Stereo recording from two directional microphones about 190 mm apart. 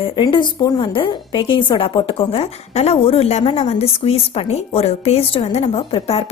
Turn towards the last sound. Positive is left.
turn(degrees=30)  # may be behind; listen again after turning